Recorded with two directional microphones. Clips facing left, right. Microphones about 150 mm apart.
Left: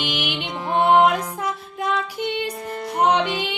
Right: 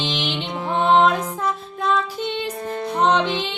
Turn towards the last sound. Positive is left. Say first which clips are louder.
# right 1 dB
turn(degrees=10)  # may be behind; listen again after turning